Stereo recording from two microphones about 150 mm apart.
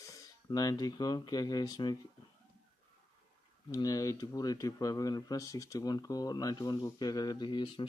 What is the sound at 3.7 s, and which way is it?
Speech, 25° left (ahead or behind).